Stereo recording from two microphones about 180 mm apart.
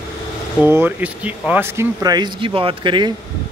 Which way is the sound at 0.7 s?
10° right (ahead or behind).